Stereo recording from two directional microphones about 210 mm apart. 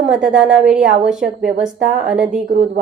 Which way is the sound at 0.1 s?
5° right (ahead or behind).